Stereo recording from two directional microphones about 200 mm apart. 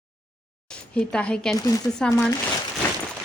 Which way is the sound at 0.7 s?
5° left (ahead or behind).